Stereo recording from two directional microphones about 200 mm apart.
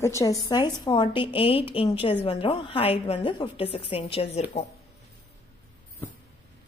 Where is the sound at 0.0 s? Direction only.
15° left (ahead or behind); by 4.6 s 30° left (ahead or behind).